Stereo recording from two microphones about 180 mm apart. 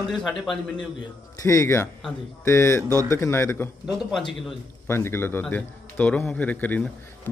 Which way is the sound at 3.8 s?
Centre (ahead or behind).